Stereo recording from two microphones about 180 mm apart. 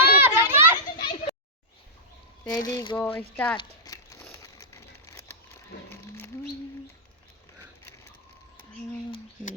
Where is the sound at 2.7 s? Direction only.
20° left (ahead or behind).